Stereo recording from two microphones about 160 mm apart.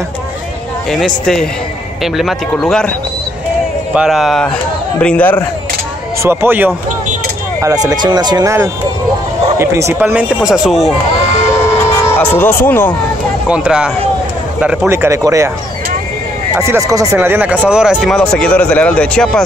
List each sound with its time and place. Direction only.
0.8 s speech: centre (ahead or behind)
3.9 s speech: 5° right (ahead or behind)
6.2 s speech: 15° right (ahead or behind)
7.6 s speech: 25° right (ahead or behind)
9.6 s speech: 15° right (ahead or behind); by 10.9 s centre (ahead or behind)
12.2 s speech: 10° left (ahead or behind)
13.5 s speech: 5° right (ahead or behind)
16.5 s speech: 15° right (ahead or behind); by 19.4 s 5° left (ahead or behind)